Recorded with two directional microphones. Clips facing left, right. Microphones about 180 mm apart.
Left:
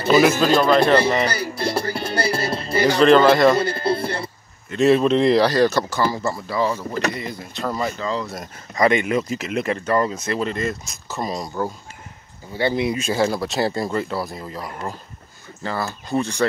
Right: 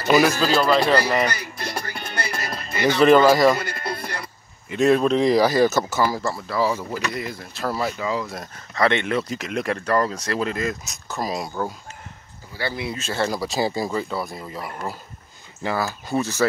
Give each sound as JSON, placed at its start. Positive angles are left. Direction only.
{"t": 0.1, "sound": "speech", "side_deg": 0}
{"t": 1.2, "sound": "music", "side_deg": 35}
{"t": 3.0, "sound": "speech", "side_deg": -10}
{"t": 3.5, "sound": "sheep", "side_deg": 30}
{"t": 4.7, "sound": "speech", "side_deg": 0}
{"t": 8.7, "sound": "speech", "side_deg": 10}
{"t": 12.5, "sound": "speech", "side_deg": 20}
{"t": 13.3, "sound": "speech", "side_deg": 0}